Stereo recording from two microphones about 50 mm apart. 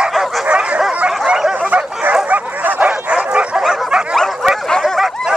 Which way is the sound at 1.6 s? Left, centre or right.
Right.